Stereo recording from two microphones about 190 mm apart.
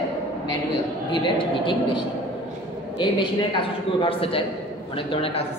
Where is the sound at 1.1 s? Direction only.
25° left (ahead or behind).